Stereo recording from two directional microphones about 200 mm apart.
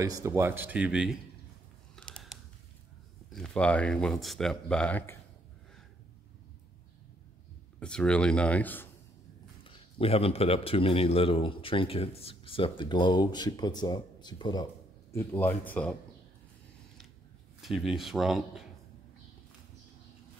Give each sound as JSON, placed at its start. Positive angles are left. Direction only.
{"t": 0.0, "sound": "speech", "side_deg": -15}
{"t": 2.0, "sound": "creak", "side_deg": 5}
{"t": 3.3, "sound": "speech", "side_deg": 5}
{"t": 7.8, "sound": "speech", "side_deg": 5}
{"t": 9.6, "sound": "a man's voice", "side_deg": 25}
{"t": 17.6, "sound": "speech", "side_deg": 0}